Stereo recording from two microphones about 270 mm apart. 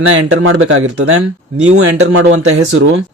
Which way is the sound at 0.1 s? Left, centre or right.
Right.